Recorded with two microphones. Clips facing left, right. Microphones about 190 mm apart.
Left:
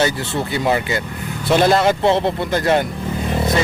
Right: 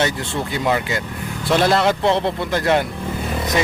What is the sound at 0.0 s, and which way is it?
Speech, 5° left (ahead or behind).